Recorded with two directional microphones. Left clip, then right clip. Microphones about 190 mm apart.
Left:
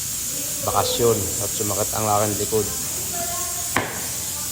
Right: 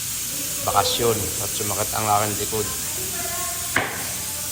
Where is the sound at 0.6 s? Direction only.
25° left (ahead or behind).